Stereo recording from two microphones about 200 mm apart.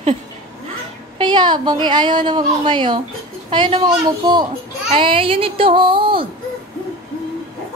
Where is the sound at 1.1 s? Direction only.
25° right (ahead or behind).